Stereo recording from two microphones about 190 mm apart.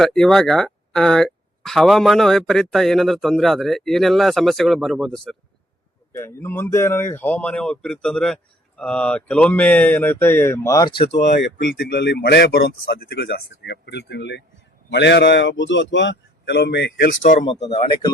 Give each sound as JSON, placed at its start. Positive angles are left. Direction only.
{"t": 0.0, "sound": "speech", "side_deg": 0}
{"t": 11.1, "sound": "a man's voice", "side_deg": 65}
{"t": 17.4, "sound": "speech", "side_deg": 35}